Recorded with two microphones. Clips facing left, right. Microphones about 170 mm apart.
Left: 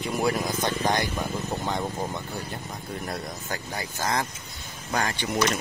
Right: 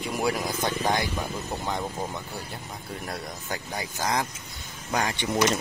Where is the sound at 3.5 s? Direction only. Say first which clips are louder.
Right 1 dB; 15° right (ahead or behind).